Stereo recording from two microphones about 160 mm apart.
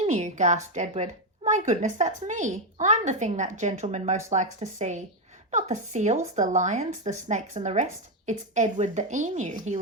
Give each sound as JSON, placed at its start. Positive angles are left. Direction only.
{"t": 0.0, "sound": "a woman's voice", "side_deg": -45}